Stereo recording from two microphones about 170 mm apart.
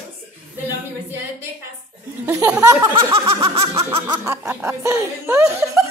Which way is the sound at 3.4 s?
30° right (ahead or behind).